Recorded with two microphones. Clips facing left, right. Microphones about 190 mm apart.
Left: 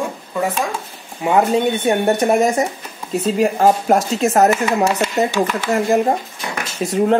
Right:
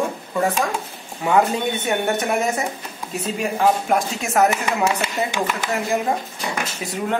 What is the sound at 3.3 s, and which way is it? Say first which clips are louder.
Speech: left 4 dB; 45° left (ahead or behind).